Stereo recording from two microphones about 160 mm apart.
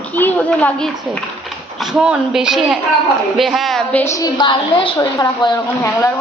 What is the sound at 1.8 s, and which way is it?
A woman's voice, 5° right (ahead or behind).